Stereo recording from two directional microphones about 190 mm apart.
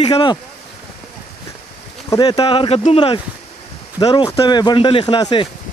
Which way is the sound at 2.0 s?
20° left (ahead or behind).